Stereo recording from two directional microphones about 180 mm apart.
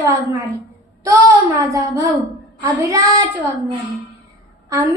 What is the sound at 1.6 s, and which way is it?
A child's voice, 20° right (ahead or behind).